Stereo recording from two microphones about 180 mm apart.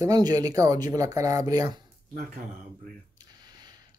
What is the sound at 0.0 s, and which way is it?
Speech, 20° right (ahead or behind).